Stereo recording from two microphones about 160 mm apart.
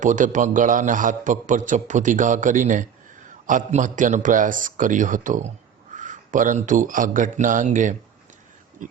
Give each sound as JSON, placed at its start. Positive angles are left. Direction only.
{"t": 0.0, "sound": "a man's voice", "side_deg": -50}